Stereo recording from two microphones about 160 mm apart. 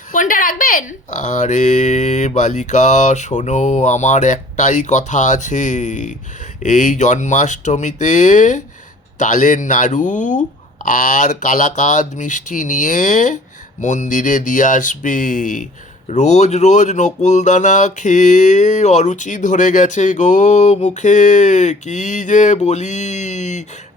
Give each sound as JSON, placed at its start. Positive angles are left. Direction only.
{"t": 0.1, "sound": "mantra", "side_deg": 55}